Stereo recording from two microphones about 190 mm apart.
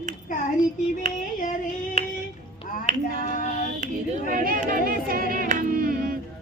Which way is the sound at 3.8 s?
45° right (ahead or behind).